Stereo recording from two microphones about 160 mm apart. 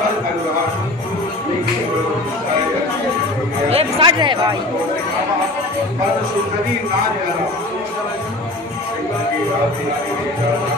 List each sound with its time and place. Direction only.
3.7 s chatter: 30° right (ahead or behind)